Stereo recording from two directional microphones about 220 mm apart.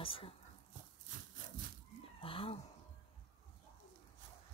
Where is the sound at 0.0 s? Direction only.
25° left (ahead or behind).